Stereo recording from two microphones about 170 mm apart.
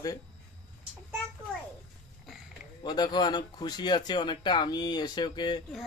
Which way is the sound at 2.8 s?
25° left (ahead or behind).